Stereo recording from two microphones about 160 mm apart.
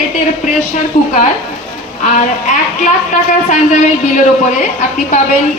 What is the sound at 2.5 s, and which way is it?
A man's voice, 50° left (ahead or behind).